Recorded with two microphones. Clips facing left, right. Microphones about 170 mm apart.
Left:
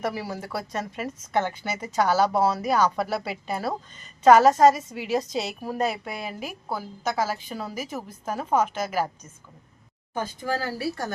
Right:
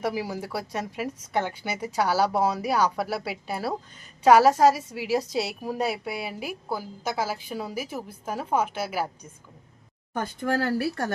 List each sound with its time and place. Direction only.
0.0 s speech: 10° right (ahead or behind)
10.2 s speech: 60° right (ahead or behind)